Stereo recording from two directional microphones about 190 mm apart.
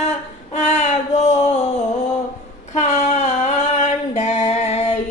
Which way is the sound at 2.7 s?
40° left (ahead or behind).